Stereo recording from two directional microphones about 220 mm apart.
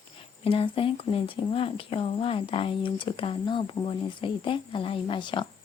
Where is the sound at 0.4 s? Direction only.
25° left (ahead or behind).